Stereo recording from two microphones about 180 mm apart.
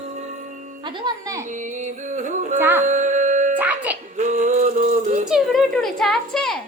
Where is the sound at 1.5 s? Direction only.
45° right (ahead or behind).